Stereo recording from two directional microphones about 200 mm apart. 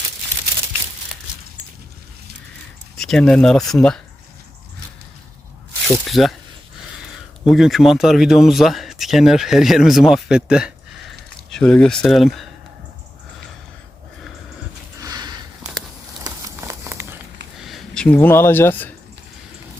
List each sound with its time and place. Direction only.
3.0 s speech: 5° left (ahead or behind)
5.9 s speech: centre (ahead or behind)
7.4 s speech: centre (ahead or behind)
15.0 s a sound: 20° right (ahead or behind)
17.6 s speech: centre (ahead or behind)